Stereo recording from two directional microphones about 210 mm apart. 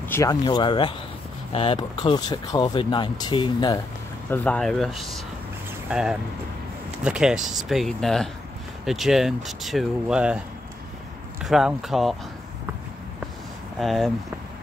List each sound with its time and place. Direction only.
0.1 s speech: 15° left (ahead or behind)
4.3 s speech: 5° left (ahead or behind)
11.4 s speech: centre (ahead or behind)
13.7 s speech: centre (ahead or behind)